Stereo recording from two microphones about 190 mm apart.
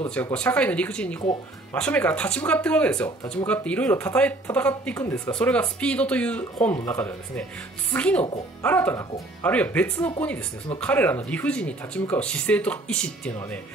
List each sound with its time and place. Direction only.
0.0 s speech: 5° left (ahead or behind)